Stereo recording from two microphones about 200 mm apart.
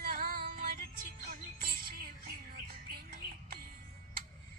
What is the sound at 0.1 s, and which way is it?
Music, 45° right (ahead or behind).